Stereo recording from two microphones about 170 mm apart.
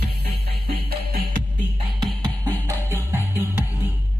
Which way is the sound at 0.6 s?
65° right (ahead or behind).